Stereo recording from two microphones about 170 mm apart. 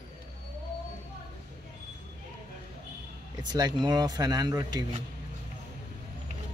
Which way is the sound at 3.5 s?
25° right (ahead or behind).